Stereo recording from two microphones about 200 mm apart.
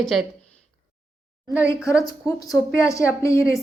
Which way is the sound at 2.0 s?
20° left (ahead or behind).